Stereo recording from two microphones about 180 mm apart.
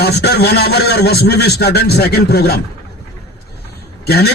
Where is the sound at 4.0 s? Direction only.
60° left (ahead or behind).